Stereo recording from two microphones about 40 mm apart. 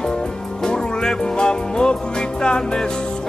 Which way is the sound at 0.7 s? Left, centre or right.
Centre.